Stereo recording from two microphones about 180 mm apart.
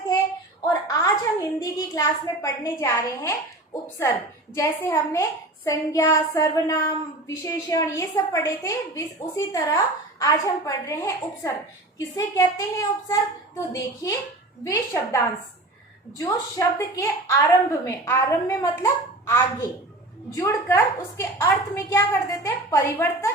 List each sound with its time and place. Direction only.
0.6 s a woman's voice: 20° left (ahead or behind)